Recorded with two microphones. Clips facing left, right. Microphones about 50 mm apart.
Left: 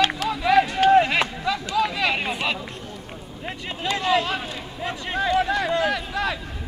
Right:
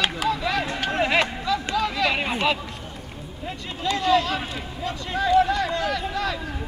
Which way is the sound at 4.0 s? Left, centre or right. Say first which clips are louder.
Right 1 dB; centre.